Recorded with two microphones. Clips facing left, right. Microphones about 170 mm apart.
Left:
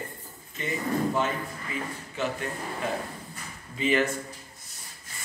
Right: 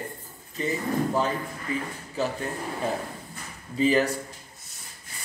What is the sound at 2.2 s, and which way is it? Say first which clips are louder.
Speech: right 2 dB; 35° right (ahead or behind).